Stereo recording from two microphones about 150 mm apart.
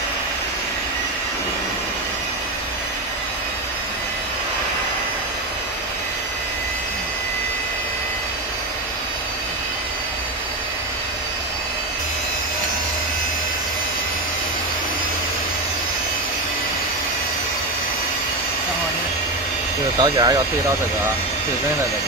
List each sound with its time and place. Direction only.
20.0 s speech: 25° right (ahead or behind)